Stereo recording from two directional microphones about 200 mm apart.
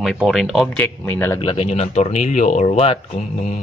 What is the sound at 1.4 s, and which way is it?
Speech, 30° left (ahead or behind).